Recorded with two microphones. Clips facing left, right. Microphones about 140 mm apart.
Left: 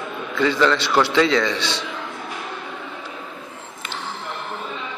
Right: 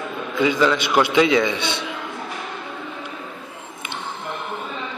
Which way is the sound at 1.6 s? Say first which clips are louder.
Right 1 dB; 55° right (ahead or behind).